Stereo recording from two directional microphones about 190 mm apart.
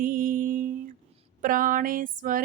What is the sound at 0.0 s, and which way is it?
Mantra, 45° right (ahead or behind).